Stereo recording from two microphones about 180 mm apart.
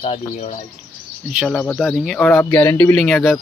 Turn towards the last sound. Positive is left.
turn(degrees=5)  # may be behind; listen again after turning